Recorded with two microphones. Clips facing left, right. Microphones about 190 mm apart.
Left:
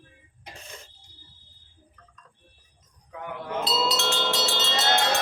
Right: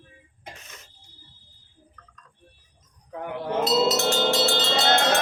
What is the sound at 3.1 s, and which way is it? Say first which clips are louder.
Chink: right 5 dB; 35° right (ahead or behind).